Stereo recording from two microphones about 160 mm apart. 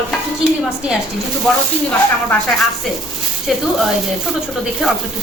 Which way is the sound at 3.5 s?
Centre (ahead or behind).